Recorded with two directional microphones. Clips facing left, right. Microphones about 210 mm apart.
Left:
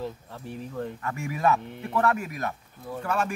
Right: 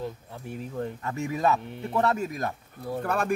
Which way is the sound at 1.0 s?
25° right (ahead or behind).